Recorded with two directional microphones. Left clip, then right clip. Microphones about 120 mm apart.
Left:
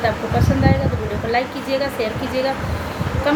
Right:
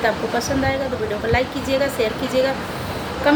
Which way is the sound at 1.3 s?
40° right (ahead or behind).